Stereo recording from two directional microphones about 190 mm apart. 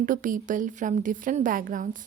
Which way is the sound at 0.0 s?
45° right (ahead or behind).